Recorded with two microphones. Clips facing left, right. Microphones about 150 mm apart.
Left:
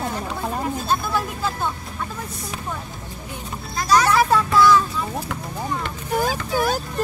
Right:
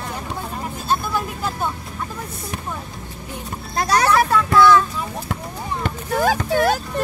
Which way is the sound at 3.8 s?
55° right (ahead or behind).